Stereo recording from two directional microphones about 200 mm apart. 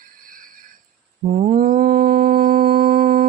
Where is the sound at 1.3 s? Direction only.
45° right (ahead or behind).